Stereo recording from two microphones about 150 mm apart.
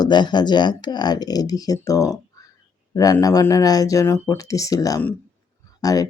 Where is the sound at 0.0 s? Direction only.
30° left (ahead or behind).